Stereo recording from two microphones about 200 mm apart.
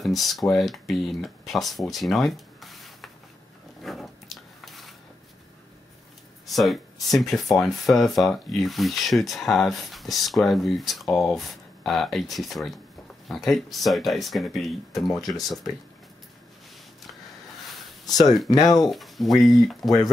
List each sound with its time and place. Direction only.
0.0 s speech: centre (ahead or behind)
3.8 s a sound: centre (ahead or behind)
6.4 s speech: centre (ahead or behind)
15.2 s speech: 20° left (ahead or behind)
18.2 s speech: centre (ahead or behind)
18.5 s speech: 20° left (ahead or behind)
18.8 s speech: centre (ahead or behind)